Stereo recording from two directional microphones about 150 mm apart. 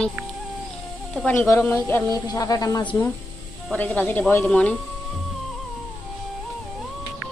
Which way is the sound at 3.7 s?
10° left (ahead or behind).